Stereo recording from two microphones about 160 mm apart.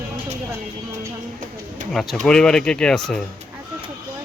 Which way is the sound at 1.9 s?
5° left (ahead or behind).